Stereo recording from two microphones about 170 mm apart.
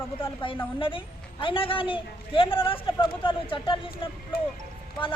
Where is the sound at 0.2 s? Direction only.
30° left (ahead or behind).